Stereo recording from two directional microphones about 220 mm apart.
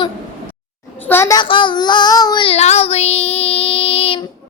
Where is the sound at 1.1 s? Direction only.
10° left (ahead or behind).